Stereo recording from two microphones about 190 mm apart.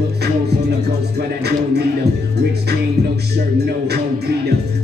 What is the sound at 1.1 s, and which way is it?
Music, 60° right (ahead or behind).